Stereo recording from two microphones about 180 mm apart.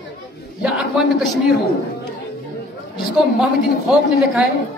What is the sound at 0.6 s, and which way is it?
Speech, 5° right (ahead or behind).